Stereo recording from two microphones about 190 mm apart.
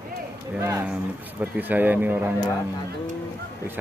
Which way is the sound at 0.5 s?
10° right (ahead or behind).